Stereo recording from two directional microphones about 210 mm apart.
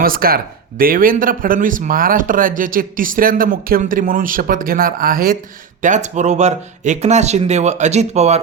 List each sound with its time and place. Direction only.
0.0 s speech: 45° right (ahead or behind)